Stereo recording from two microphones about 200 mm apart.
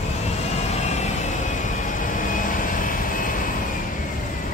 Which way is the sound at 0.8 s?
35° left (ahead or behind).